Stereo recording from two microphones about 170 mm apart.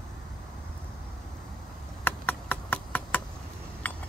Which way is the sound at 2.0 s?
10° left (ahead or behind).